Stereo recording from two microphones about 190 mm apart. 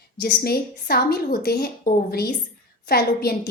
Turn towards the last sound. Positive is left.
turn(degrees=55)  # may be behind; listen again after turning